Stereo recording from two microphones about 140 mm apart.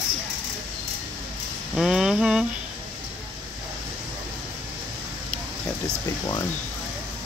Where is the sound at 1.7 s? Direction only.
5° right (ahead or behind).